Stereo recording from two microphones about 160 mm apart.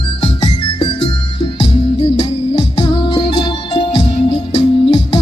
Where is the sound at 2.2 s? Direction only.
35° left (ahead or behind).